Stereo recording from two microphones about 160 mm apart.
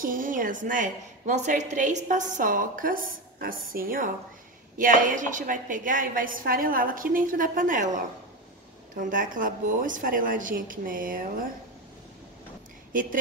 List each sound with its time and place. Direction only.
0.0 s a woman's voice: 60° right (ahead or behind)